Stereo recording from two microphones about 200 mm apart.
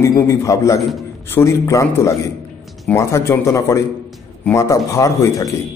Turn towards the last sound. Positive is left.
turn(degrees=15)  # may be behind; listen again after turning